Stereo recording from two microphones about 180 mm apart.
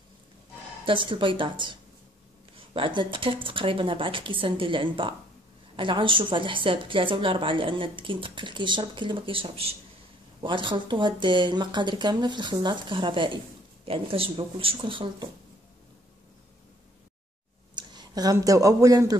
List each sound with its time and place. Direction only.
0.8 s a woman's voice: 25° right (ahead or behind)
17.7 s speech: 20° right (ahead or behind)